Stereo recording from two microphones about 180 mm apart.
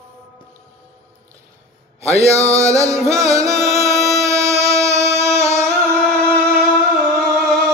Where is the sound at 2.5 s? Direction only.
15° right (ahead or behind).